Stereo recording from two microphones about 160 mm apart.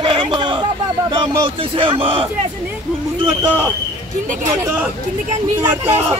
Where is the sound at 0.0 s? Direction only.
30° right (ahead or behind).